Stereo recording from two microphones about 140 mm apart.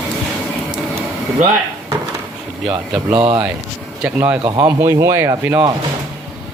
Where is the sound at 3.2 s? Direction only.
35° right (ahead or behind).